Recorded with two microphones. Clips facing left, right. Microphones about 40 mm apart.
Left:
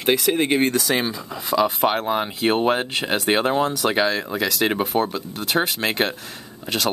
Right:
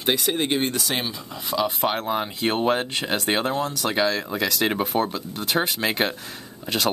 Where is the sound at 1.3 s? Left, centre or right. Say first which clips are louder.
Left 4 dB; left.